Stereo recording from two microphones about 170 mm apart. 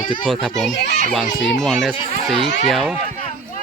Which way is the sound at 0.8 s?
80° left.